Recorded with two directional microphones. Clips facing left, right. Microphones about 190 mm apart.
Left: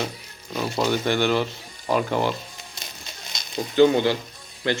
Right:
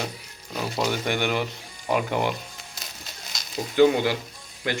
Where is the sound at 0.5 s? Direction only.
5° right (ahead or behind).